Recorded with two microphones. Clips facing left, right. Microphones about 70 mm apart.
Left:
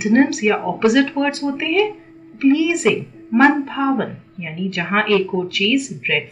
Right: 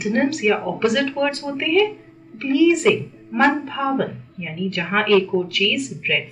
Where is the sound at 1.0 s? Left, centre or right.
Left.